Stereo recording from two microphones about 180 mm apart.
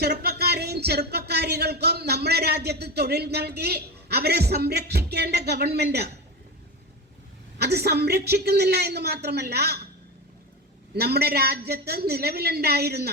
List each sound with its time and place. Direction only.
0.0 s speech: 60° right (ahead or behind)
7.6 s speech: 65° right (ahead or behind)
10.9 s speech: 65° right (ahead or behind)